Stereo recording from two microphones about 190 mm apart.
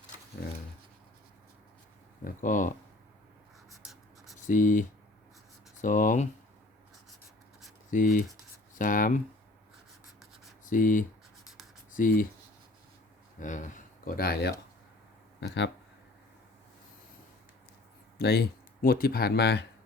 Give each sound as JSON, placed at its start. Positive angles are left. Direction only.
{"t": 2.2, "sound": "speech", "side_deg": 45}
{"t": 4.4, "sound": "speech", "side_deg": 45}
{"t": 7.9, "sound": "speech", "side_deg": 45}
{"t": 10.7, "sound": "speech", "side_deg": 45}
{"t": 13.4, "sound": "speech", "side_deg": 40}
{"t": 15.4, "sound": "speech", "side_deg": 70}
{"t": 18.2, "sound": "speech", "side_deg": 55}